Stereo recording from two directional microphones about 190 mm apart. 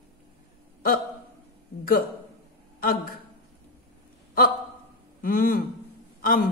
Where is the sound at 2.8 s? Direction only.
50° left (ahead or behind).